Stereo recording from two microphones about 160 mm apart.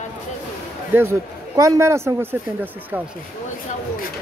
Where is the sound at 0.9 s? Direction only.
15° right (ahead or behind).